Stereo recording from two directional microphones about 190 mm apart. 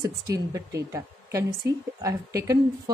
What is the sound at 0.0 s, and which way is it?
A woman's voice, 20° right (ahead or behind).